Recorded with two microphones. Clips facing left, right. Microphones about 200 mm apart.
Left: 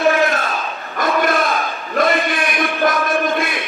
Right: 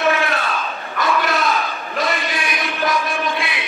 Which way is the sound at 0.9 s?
50° left (ahead or behind).